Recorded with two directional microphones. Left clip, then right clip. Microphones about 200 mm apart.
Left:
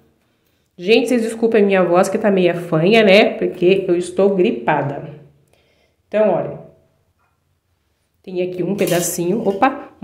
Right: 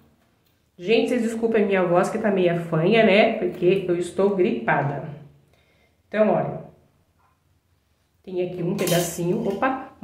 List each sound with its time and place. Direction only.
0.7 s a woman's voice: 40° left (ahead or behind)
6.1 s a woman's voice: 35° left (ahead or behind)
8.2 s a woman's voice: 35° left (ahead or behind)